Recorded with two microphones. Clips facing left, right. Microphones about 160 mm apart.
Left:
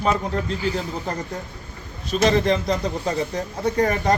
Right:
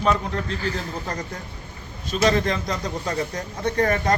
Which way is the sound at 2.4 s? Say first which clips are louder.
Left 5 dB; 30° left (ahead or behind).